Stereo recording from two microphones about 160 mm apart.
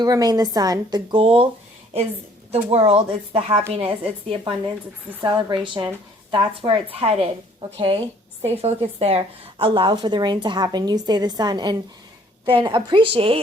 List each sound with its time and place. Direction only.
0.0 s a woman's voice: 25° right (ahead or behind)
2.5 s a woman's voice: 40° right (ahead or behind)